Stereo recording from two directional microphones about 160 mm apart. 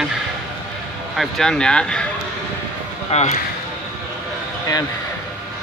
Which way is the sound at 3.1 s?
40° left (ahead or behind).